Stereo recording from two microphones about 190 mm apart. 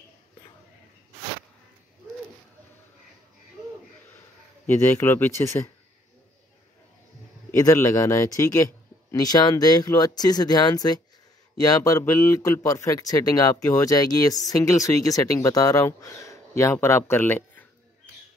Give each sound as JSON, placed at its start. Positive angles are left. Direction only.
{"t": 4.6, "sound": "speech", "side_deg": 10}
{"t": 7.5, "sound": "speech", "side_deg": 15}